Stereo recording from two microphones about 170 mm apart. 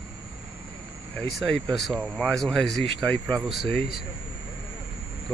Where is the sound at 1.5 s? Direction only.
Centre (ahead or behind).